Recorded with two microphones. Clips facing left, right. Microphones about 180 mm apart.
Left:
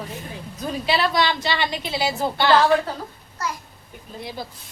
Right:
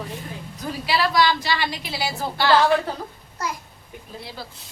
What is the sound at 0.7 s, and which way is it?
A woman's voice, 25° left (ahead or behind).